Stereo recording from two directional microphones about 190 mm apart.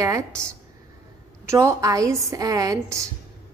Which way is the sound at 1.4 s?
15° right (ahead or behind).